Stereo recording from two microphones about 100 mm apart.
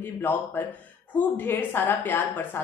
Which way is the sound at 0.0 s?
20° left (ahead or behind).